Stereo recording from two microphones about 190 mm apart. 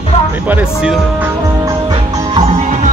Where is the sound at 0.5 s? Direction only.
5° right (ahead or behind).